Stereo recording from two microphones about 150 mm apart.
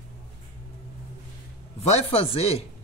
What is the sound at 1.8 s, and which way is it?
Speech, 45° left (ahead or behind).